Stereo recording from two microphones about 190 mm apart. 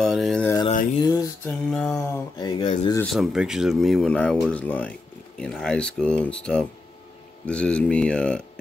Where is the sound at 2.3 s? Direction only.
25° left (ahead or behind).